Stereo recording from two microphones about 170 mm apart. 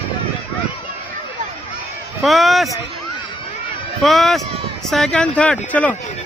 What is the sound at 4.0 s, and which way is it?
A man's voice, centre (ahead or behind).